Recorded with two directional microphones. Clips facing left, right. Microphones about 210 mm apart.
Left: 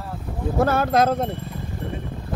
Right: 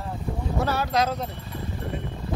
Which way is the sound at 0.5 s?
50° left (ahead or behind).